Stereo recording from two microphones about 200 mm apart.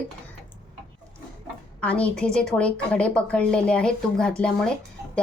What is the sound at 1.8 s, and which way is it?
A woman's voice, 5° left (ahead or behind).